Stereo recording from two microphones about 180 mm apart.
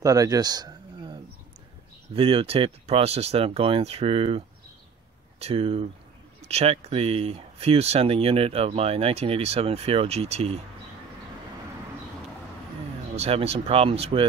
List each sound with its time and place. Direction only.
0.0 s a sound: 20° right (ahead or behind)
2.1 s speech: 30° right (ahead or behind)
13.1 s speech: 35° right (ahead or behind)